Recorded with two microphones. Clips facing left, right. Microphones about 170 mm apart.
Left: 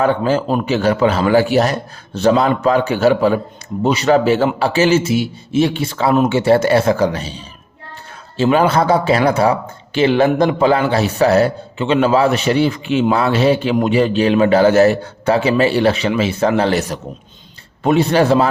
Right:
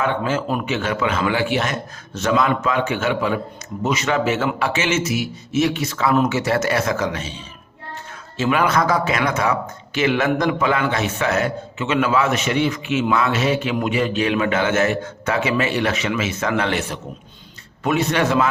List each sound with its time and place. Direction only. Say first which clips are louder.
0.0 s speech: left 6 dB; 35° left (ahead or behind)